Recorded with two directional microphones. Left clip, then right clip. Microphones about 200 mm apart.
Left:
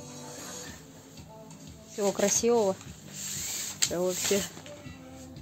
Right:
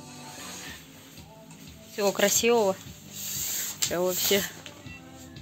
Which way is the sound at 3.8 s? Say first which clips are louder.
Right 1 dB; 15° right (ahead or behind).